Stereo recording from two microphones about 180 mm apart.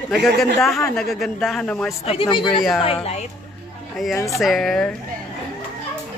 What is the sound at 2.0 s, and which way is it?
Speech, 30° left (ahead or behind).